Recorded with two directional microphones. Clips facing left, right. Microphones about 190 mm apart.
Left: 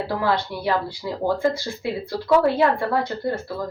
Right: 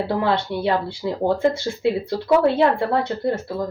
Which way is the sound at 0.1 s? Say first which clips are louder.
Even; 25° right (ahead or behind).